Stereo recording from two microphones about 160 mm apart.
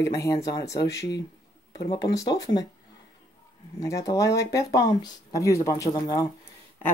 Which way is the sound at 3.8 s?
20° left (ahead or behind).